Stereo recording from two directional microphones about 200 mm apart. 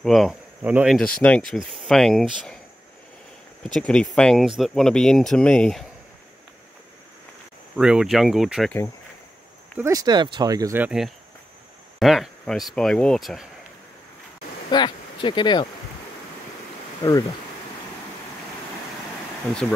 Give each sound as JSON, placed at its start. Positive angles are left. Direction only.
{"t": 0.0, "sound": "speech", "side_deg": 0}
{"t": 3.6, "sound": "speech", "side_deg": 5}
{"t": 7.7, "sound": "speech", "side_deg": -5}
{"t": 9.8, "sound": "speech", "side_deg": -15}
{"t": 14.7, "sound": "speech", "side_deg": 25}